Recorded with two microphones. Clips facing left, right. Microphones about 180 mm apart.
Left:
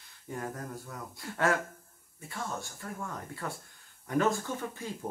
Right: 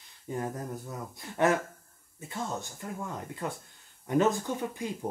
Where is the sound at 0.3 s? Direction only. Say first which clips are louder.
Right 4 dB; 20° right (ahead or behind).